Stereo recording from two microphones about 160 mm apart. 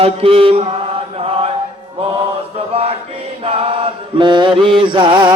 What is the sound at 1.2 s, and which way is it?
Chant, 40° right (ahead or behind).